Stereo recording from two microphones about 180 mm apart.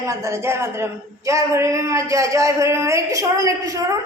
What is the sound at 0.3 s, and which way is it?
A woman's voice, 15° right (ahead or behind).